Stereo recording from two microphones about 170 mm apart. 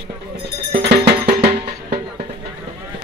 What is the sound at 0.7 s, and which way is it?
Music, 75° right (ahead or behind).